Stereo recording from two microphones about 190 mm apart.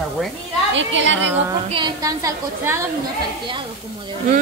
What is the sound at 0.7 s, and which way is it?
Speech, 75° right (ahead or behind).